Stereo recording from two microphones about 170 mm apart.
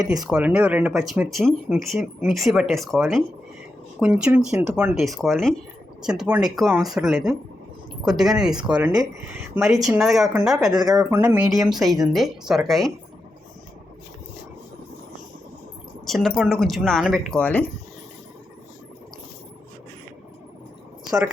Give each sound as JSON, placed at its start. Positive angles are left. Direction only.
{"t": 0.3, "sound": "speech", "side_deg": -5}
{"t": 4.0, "sound": "speech", "side_deg": -10}
{"t": 10.7, "sound": "speech", "side_deg": -20}
{"t": 11.7, "sound": "speech", "side_deg": 0}
{"t": 16.0, "sound": "speech", "side_deg": 0}